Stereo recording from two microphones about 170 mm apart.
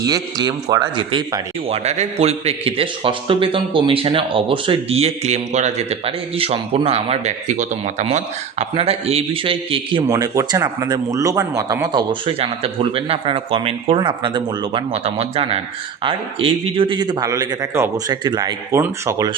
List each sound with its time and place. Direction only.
0.0 s speech: 20° right (ahead or behind)
10.1 s speech: 20° right (ahead or behind)